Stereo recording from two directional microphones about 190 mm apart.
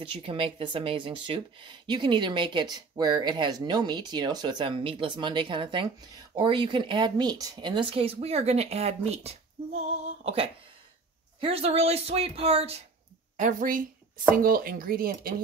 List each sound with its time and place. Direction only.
0.0 s speech: 25° right (ahead or behind)
13.4 s speech: 45° right (ahead or behind)